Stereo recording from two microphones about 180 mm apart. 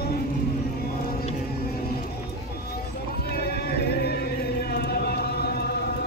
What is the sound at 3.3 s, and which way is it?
Music, 60° left (ahead or behind).